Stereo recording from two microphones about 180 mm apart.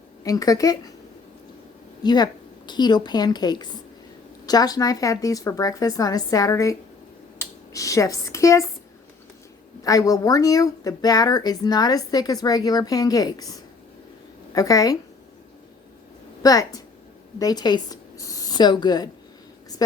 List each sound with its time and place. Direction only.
0.3 s speech: 20° left (ahead or behind)
2.0 s a woman's voice: 25° left (ahead or behind)
9.8 s speech: 20° left (ahead or behind)
16.4 s speech: 20° left (ahead or behind)